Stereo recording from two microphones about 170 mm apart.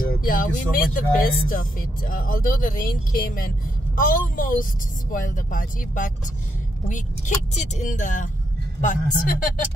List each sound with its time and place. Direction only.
0.0 s speech: 55° left (ahead or behind)